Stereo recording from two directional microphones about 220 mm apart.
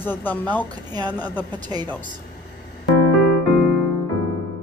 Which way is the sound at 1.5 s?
20° right (ahead or behind).